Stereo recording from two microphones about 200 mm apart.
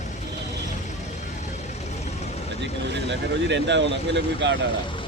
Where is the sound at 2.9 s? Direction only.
60° right (ahead or behind).